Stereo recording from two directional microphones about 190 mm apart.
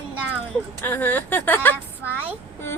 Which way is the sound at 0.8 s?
10° left (ahead or behind).